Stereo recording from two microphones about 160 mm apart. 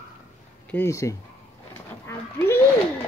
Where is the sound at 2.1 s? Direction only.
15° left (ahead or behind).